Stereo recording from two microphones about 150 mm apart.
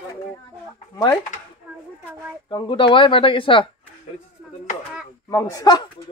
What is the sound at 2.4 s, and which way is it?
Speech, 30° left (ahead or behind).